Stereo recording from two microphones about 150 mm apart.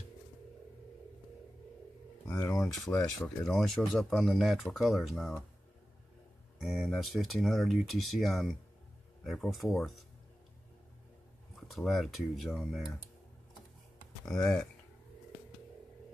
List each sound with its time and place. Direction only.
2.2 s a sound: 15° left (ahead or behind)
2.7 s speech: centre (ahead or behind)
6.6 s speech: centre (ahead or behind)
11.5 s speech: centre (ahead or behind)